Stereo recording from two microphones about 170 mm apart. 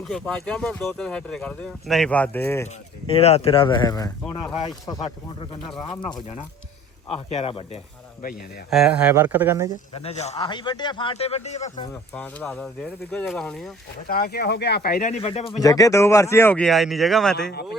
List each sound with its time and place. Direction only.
0.1 s speech: 5° left (ahead or behind)
3.1 s speech: 35° left (ahead or behind); by 4.1 s 20° left (ahead or behind)
5.6 s speech: centre (ahead or behind)
7.3 s speech: 35° left (ahead or behind)
8.7 s speech: 5° right (ahead or behind)
9.9 s speech: 35° left (ahead or behind)
10.3 s speech: 25° left (ahead or behind); by 11.7 s 40° left (ahead or behind)
12.1 s speech: 10° left (ahead or behind)
14.1 s speech: 65° left (ahead or behind)
15.1 s speech: 35° left (ahead or behind)
15.6 s speech: 20° left (ahead or behind); by 17.3 s centre (ahead or behind)